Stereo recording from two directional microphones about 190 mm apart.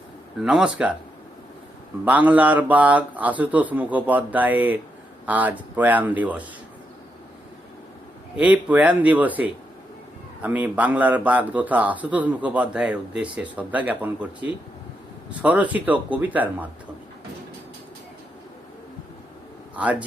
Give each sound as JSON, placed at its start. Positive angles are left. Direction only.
{"t": 0.4, "sound": "speech", "side_deg": -5}
{"t": 2.0, "sound": "a man's voice", "side_deg": -10}
{"t": 8.4, "sound": "a man's voice", "side_deg": -5}
{"t": 19.7, "sound": "a man's voice", "side_deg": -5}